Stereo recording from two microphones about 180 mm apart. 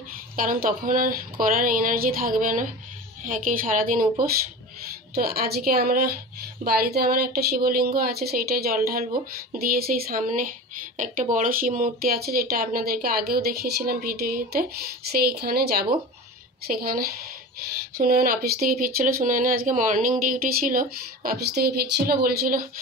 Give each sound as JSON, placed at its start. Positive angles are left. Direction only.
{"t": 0.4, "sound": "speech", "side_deg": -50}